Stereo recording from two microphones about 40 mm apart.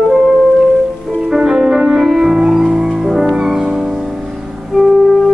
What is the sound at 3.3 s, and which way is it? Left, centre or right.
Music, centre.